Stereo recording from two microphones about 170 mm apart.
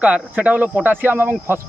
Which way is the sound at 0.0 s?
5° right (ahead or behind).